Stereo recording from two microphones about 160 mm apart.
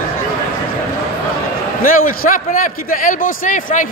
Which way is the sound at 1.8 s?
60° left (ahead or behind).